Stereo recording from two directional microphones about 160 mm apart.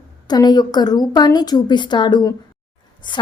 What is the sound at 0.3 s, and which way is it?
A woman's voice, 25° left (ahead or behind).